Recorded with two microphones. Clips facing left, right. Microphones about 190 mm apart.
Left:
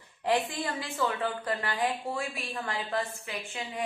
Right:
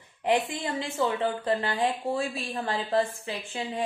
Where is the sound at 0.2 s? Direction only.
20° right (ahead or behind).